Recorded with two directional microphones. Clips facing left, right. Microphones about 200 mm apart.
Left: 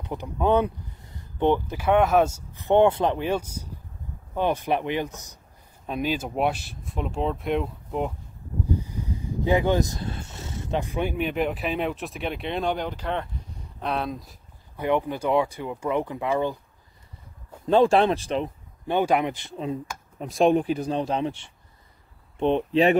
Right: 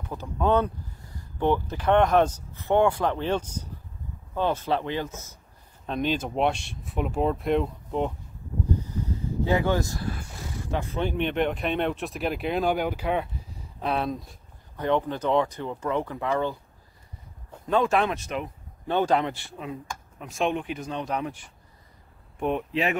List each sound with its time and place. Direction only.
0.0 s speech: 15° left (ahead or behind)
3.3 s speech: 10° left (ahead or behind)
8.8 s speech: 15° left (ahead or behind)
14.8 s speech: 10° left (ahead or behind)
17.6 s speech: 30° left (ahead or behind)
18.9 s speech: 15° left (ahead or behind)
19.6 s speech: 35° left (ahead or behind)